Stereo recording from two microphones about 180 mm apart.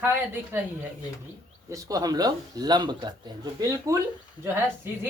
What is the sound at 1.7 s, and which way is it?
Speech, 20° right (ahead or behind).